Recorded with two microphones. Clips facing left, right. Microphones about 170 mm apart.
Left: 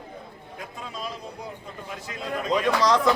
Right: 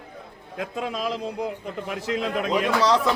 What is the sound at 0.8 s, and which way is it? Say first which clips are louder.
A man's voice: right 8 dB; 85° right.